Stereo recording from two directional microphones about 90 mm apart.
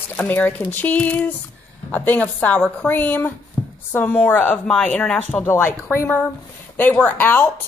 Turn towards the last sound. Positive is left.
turn(degrees=25)  # may be behind; listen again after turning